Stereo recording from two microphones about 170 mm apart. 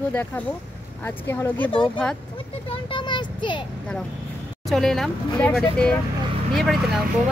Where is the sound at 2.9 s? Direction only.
25° left (ahead or behind).